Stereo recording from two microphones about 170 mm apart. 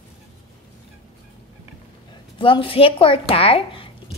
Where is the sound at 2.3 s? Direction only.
30° left (ahead or behind).